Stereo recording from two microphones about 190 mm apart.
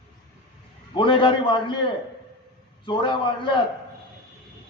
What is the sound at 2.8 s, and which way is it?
Speech, 25° left (ahead or behind).